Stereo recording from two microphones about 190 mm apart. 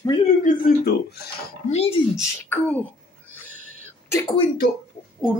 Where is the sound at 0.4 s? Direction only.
55° left (ahead or behind).